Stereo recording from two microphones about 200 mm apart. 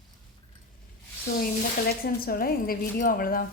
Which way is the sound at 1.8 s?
50° left (ahead or behind).